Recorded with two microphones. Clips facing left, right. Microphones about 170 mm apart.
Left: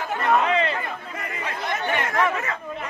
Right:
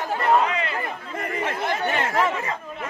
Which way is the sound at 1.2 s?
50° right (ahead or behind).